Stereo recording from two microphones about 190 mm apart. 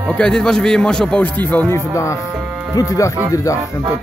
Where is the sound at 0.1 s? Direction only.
5° left (ahead or behind).